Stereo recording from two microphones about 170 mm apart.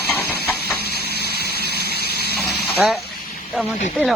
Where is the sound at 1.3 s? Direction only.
70° right (ahead or behind).